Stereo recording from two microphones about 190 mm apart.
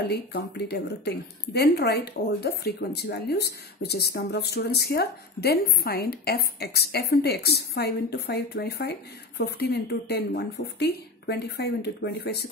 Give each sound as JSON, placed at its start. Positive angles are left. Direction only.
{"t": 0.1, "sound": "a woman's voice", "side_deg": 60}